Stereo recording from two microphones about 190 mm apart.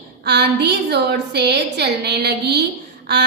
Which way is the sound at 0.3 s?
60° right (ahead or behind).